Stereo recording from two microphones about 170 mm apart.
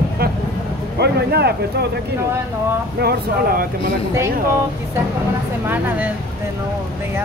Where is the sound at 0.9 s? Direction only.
75° right (ahead or behind).